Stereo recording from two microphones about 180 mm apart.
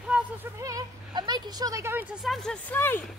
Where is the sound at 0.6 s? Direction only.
20° right (ahead or behind).